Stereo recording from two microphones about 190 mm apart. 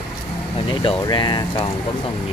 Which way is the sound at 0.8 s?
25° left (ahead or behind).